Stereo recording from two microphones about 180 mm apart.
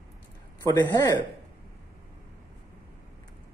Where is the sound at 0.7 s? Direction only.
20° left (ahead or behind).